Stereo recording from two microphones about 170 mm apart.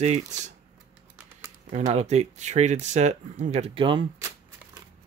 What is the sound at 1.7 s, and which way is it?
Speech, 40° right (ahead or behind).